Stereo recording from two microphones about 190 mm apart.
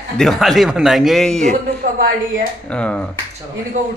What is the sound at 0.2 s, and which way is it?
Mantra, centre (ahead or behind).